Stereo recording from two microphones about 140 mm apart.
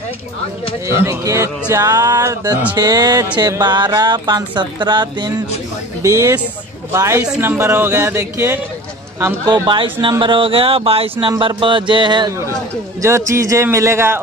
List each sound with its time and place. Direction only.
0.8 s a man's voice: 20° right (ahead or behind)
6.0 s a man's voice: 20° right (ahead or behind)
9.5 s speech: 35° right (ahead or behind)
13.0 s a man's voice: 20° right (ahead or behind)